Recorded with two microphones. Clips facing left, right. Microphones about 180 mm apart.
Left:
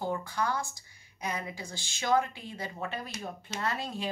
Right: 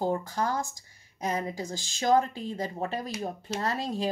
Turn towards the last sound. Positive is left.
turn(degrees=-40)  # may be behind; listen again after turning